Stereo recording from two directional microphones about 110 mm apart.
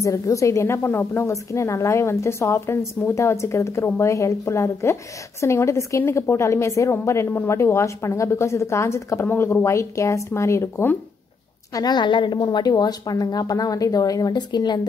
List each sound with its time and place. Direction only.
0.0 s a woman's voice: 30° left (ahead or behind)
11.7 s a woman's voice: 40° left (ahead or behind)